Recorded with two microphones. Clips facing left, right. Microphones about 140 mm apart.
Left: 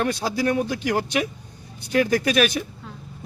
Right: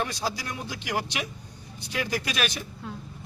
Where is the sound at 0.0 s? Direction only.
60° left (ahead or behind).